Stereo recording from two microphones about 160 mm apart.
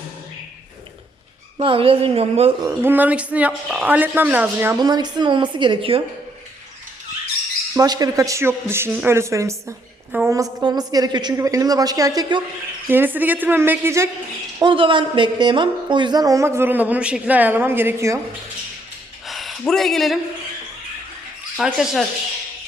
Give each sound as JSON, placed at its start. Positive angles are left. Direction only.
{"t": 1.5, "sound": "a woman's voice", "side_deg": -35}
{"t": 2.6, "sound": "speech", "side_deg": -15}
{"t": 4.8, "sound": "a woman's voice", "side_deg": -25}
{"t": 7.8, "sound": "a woman's voice", "side_deg": -20}
{"t": 14.6, "sound": "speech", "side_deg": -30}
{"t": 19.3, "sound": "speech", "side_deg": 0}
{"t": 21.5, "sound": "speech", "side_deg": 0}